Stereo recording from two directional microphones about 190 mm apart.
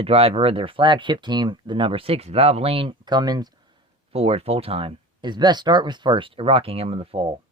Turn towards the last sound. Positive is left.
turn(degrees=-30)  # may be behind; listen again after turning